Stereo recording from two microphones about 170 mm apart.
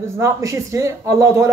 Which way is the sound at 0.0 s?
15° right (ahead or behind).